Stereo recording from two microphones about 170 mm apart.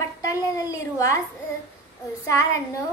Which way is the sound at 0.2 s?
20° left (ahead or behind).